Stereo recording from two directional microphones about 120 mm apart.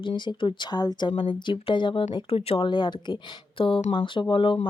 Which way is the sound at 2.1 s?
55° left (ahead or behind).